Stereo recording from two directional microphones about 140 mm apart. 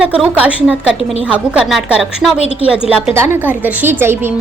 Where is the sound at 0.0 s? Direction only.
10° right (ahead or behind).